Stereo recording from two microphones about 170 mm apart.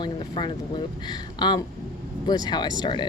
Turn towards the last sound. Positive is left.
turn(degrees=25)  # may be behind; listen again after turning